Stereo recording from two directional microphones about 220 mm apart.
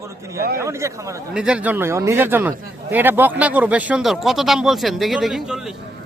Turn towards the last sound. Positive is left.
turn(degrees=0)  # may be behind; listen again after turning